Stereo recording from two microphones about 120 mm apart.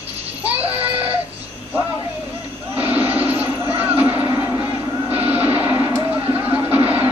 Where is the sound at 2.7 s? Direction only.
15° right (ahead or behind).